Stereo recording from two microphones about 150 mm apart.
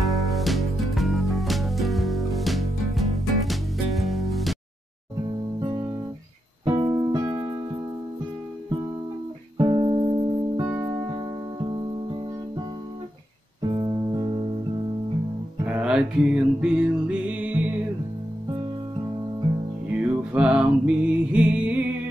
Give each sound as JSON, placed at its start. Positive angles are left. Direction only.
{"t": 0.0, "sound": "music", "side_deg": 0}
{"t": 6.6, "sound": "music", "side_deg": -30}
{"t": 9.6, "sound": "music", "side_deg": -30}
{"t": 10.7, "sound": "music", "side_deg": -15}
{"t": 13.7, "sound": "music", "side_deg": -25}
{"t": 15.6, "sound": "music", "side_deg": -10}
{"t": 19.9, "sound": "music", "side_deg": -10}